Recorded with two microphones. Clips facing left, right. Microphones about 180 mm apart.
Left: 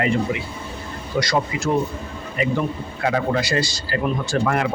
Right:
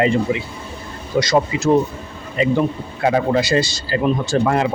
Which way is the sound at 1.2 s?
20° right (ahead or behind).